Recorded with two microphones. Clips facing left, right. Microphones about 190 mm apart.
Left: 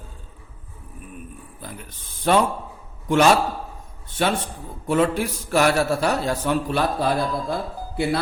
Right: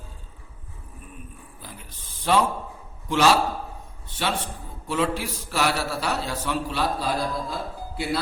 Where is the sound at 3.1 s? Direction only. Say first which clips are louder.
Left 3 dB; 55° left (ahead or behind).